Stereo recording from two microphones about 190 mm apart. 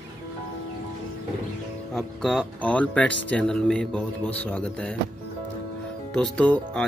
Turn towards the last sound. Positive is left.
turn(degrees=5)  # may be behind; listen again after turning